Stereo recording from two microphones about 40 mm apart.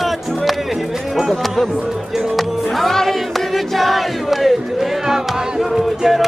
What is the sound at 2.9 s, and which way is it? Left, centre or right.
Battle cry, centre.